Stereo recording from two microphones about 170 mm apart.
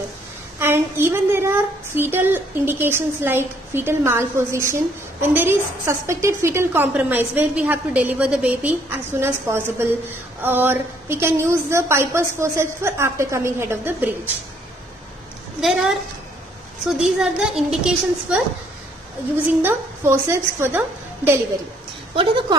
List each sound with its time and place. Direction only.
0.6 s a woman's voice: 15° right (ahead or behind)
17.0 s a woman's voice: 5° right (ahead or behind)
19.6 s a woman's voice: 15° right (ahead or behind)
22.1 s a woman's voice: 30° right (ahead or behind)